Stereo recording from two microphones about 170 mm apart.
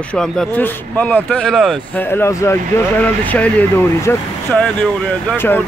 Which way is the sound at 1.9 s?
10° left (ahead or behind).